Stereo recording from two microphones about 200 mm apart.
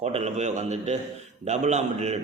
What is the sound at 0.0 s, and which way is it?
A man's voice, 35° right (ahead or behind).